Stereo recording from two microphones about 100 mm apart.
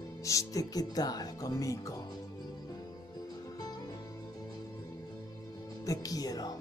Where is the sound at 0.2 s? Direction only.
35° left (ahead or behind).